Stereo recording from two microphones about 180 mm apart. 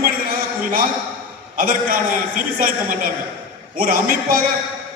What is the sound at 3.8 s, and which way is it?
Speech, 55° right (ahead or behind).